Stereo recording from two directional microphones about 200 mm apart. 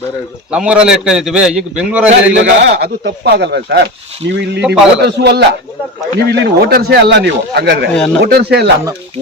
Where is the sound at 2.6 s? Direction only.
60° right (ahead or behind).